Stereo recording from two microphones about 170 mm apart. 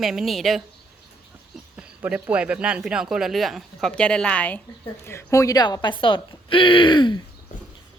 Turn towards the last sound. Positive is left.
turn(degrees=25)  # may be behind; listen again after turning